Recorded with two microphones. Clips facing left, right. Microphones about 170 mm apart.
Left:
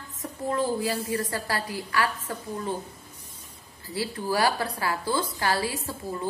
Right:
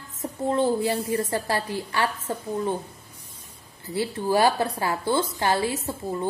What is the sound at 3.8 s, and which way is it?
A woman's voice, 25° right (ahead or behind).